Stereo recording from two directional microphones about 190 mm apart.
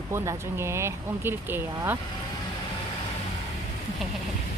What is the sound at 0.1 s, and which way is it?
Speech, 15° right (ahead or behind).